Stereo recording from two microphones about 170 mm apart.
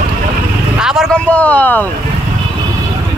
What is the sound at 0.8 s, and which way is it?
Speech, centre (ahead or behind).